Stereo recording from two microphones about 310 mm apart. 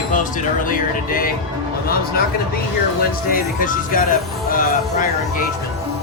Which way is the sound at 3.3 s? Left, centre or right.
Left.